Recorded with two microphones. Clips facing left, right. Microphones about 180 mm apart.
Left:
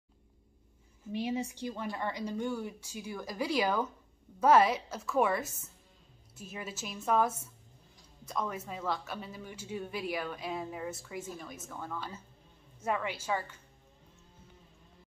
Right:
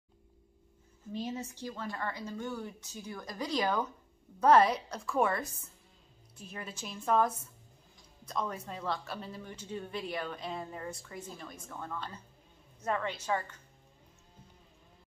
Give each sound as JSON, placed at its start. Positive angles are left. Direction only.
{"t": 1.1, "sound": "speech", "side_deg": 10}